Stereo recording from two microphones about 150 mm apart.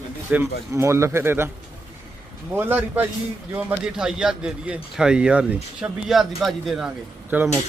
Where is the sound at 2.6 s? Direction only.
15° right (ahead or behind).